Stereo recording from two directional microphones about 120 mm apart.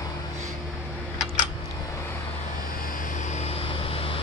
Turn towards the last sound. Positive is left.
turn(degrees=50)  # may be behind; listen again after turning